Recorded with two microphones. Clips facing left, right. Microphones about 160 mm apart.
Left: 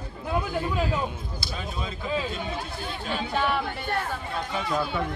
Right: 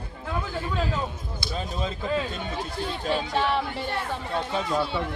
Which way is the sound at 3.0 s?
35° right (ahead or behind).